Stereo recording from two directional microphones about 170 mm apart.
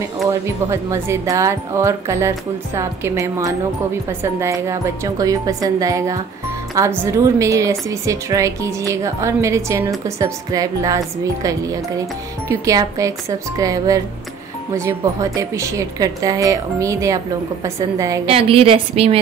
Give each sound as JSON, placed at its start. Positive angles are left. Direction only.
{"t": 0.3, "sound": "a woman's voice", "side_deg": -15}
{"t": 12.4, "sound": "a woman's voice", "side_deg": -20}
{"t": 18.3, "sound": "a woman's voice", "side_deg": -35}